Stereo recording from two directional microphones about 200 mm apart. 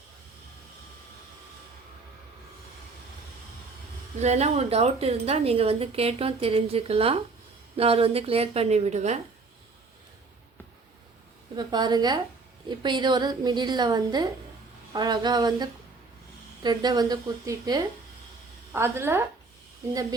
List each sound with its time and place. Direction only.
4.2 s a woman's voice: 35° right (ahead or behind)
11.5 s a woman's voice: 20° right (ahead or behind)